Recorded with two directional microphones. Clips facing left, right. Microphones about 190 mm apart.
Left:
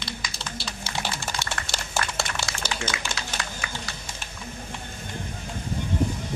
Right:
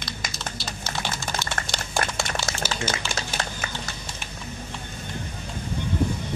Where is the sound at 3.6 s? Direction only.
40° right (ahead or behind).